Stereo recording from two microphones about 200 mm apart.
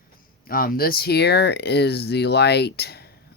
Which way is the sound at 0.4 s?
45° left (ahead or behind).